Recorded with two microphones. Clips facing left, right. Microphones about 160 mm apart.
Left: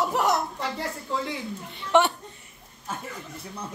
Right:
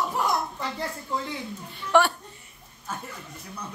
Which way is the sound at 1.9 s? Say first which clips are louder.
Even; 20° left (ahead or behind).